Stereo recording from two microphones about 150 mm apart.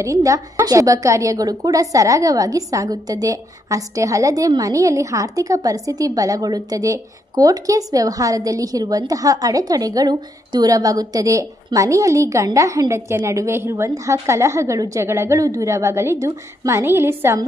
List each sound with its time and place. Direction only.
0.0 s a woman's voice: 20° right (ahead or behind)